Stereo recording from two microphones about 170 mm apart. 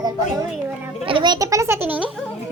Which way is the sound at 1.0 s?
30° right (ahead or behind).